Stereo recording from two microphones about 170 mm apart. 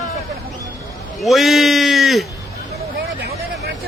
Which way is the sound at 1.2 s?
Centre (ahead or behind).